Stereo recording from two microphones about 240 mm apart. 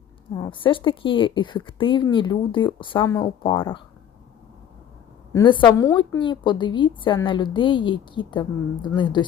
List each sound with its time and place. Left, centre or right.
0.3 s a woman's voice: centre
5.3 s a woman's voice: centre